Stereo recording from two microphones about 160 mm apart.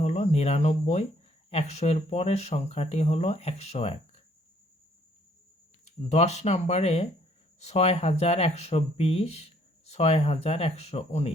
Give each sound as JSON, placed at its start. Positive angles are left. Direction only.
{"t": 0.0, "sound": "speech", "side_deg": 45}
{"t": 5.8, "sound": "speech", "side_deg": 45}